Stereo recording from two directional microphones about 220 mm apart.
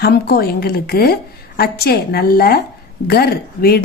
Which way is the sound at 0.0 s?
45° left (ahead or behind).